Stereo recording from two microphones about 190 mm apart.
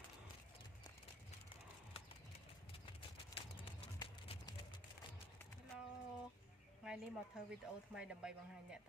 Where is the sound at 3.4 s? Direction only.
30° left (ahead or behind).